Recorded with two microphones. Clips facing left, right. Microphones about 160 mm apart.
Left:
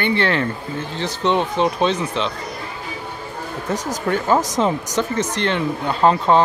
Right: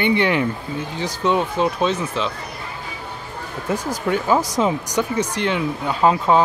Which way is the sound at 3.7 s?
40° left (ahead or behind).